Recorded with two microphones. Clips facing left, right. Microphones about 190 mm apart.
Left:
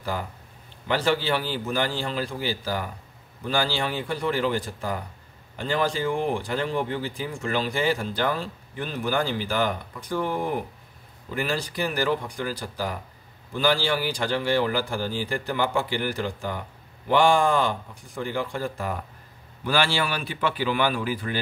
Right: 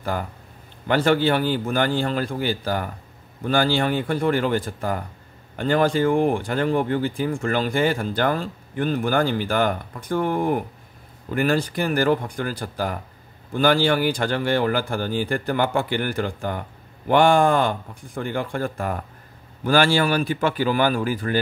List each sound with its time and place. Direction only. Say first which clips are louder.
0.8 s speech: right 5 dB; 55° right (ahead or behind)